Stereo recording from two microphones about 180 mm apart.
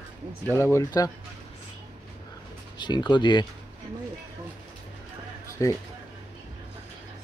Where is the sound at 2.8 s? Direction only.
25° left (ahead or behind).